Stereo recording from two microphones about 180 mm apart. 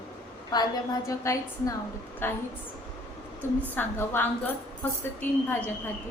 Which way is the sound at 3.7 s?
10° left (ahead or behind).